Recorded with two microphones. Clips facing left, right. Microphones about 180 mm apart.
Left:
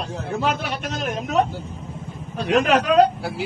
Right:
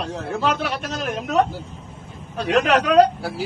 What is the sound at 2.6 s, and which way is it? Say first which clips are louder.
Speech: even; 70° right (ahead or behind).